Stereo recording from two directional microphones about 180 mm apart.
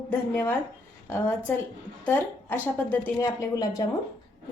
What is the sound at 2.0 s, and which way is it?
A woman's voice, 10° left (ahead or behind).